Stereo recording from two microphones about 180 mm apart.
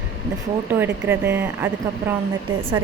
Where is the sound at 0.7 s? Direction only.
10° right (ahead or behind).